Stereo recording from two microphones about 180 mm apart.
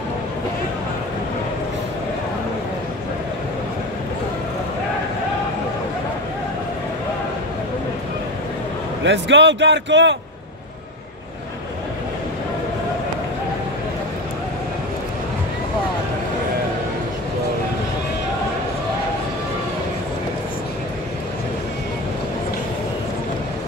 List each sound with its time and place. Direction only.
9.0 s a man's voice: 85° right